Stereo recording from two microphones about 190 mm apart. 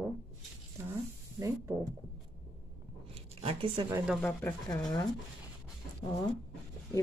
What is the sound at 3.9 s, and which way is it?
Speech, 5° right (ahead or behind).